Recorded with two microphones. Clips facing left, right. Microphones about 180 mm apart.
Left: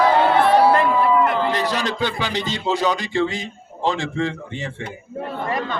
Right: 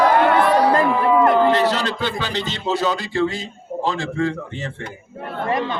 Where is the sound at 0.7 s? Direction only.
40° right (ahead or behind).